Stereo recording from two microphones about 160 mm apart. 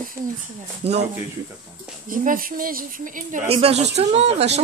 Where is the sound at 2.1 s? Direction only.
60° right (ahead or behind).